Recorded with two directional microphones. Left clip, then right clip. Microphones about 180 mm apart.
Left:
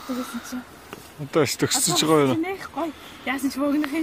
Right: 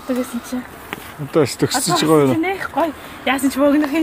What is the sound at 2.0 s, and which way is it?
Speech, 5° left (ahead or behind).